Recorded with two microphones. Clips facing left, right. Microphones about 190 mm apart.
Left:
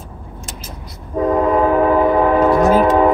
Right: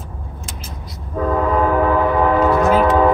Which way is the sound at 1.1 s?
20° left (ahead or behind).